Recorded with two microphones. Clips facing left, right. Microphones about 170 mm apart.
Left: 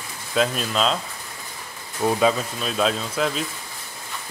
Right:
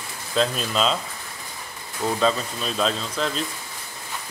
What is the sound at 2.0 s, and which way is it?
Speech, 10° left (ahead or behind).